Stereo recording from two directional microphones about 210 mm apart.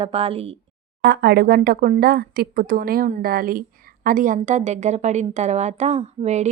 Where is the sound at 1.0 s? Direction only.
50° right (ahead or behind).